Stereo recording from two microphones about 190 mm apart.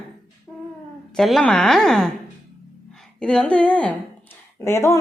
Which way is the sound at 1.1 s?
Centre (ahead or behind).